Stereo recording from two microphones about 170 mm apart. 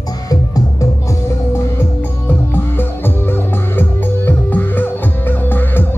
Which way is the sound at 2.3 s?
10° left (ahead or behind).